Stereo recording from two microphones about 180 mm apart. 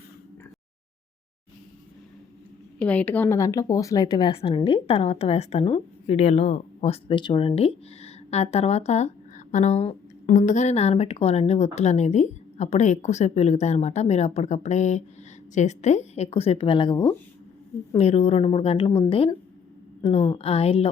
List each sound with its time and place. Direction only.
2.8 s speech: 10° left (ahead or behind); by 17.2 s 25° left (ahead or behind)
17.9 s speech: 35° left (ahead or behind)